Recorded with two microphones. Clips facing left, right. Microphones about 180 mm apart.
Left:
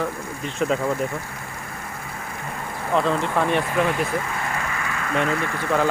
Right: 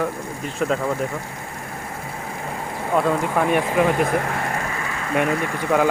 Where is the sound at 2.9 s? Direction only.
10° right (ahead or behind).